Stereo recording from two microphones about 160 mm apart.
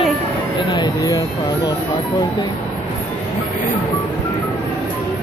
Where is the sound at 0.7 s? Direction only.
25° left (ahead or behind).